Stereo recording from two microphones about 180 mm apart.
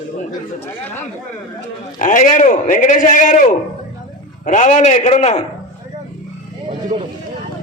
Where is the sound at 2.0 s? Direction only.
45° left (ahead or behind).